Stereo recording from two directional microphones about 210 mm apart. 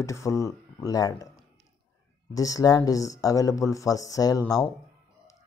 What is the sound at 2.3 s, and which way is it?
Speech, 15° left (ahead or behind).